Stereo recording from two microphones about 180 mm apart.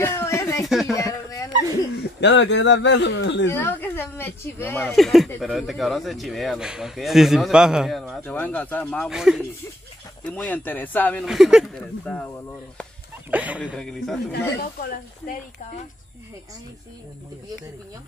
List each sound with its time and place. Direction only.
0.0 s a sound: 15° left (ahead or behind)
0.7 s a sound: centre (ahead or behind)
0.9 s a sound: 20° left (ahead or behind)
2.1 s speech: 75° left (ahead or behind)
3.4 s a man's voice: 10° left (ahead or behind); by 9.5 s 5° right (ahead or behind)
10.2 s speech: 10° left (ahead or behind)
11.2 s a man's voice: centre (ahead or behind); by 12.8 s 15° left (ahead or behind)
13.3 s speech: 10° right (ahead or behind)
13.7 s a man's voice: 5° left (ahead or behind)
14.6 s speech: 55° left (ahead or behind)